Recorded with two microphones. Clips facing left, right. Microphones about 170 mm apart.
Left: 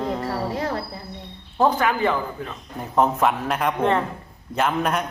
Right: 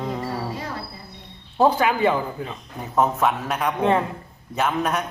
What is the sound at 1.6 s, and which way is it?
A man's voice, 5° right (ahead or behind).